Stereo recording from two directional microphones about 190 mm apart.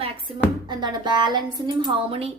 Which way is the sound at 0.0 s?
25° right (ahead or behind).